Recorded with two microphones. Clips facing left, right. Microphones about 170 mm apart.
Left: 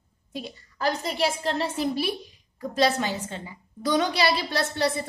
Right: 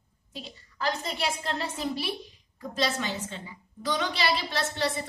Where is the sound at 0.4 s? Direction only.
40° left (ahead or behind).